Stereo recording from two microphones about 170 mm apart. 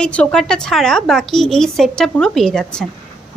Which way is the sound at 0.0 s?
5° left (ahead or behind).